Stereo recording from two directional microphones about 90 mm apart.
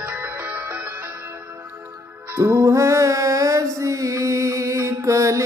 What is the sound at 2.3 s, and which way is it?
Music, 30° right (ahead or behind).